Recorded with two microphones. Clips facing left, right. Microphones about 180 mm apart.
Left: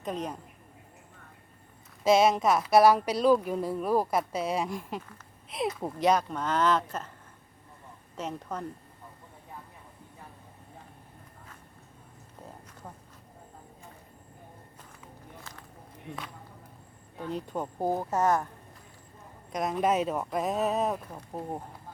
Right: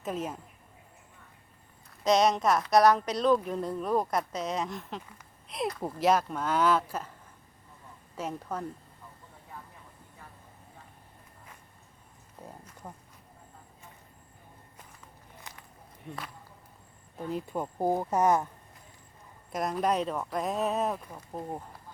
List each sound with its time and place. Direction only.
0.0 s a woman's voice: 5° right (ahead or behind)
2.0 s a woman's voice: 5° left (ahead or behind)
8.1 s speech: 10° right (ahead or behind)
12.8 s speech: centre (ahead or behind)
15.5 s a sound: 15° right (ahead or behind)
17.2 s speech: 5° right (ahead or behind)
19.5 s a woman's voice: centre (ahead or behind)